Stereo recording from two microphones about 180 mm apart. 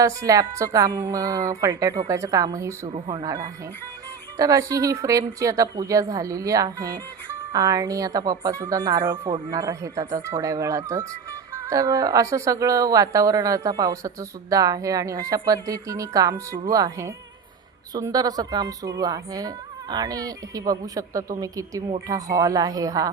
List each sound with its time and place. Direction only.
0.0 s a woman's voice: 20° right (ahead or behind)
2.8 s a woman's voice: 30° right (ahead or behind)